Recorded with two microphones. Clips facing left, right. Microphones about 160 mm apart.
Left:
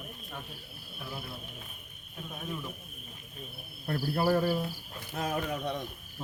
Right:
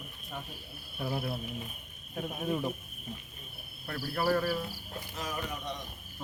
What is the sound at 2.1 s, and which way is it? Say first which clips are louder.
Speech: right 6 dB; 50° right (ahead or behind).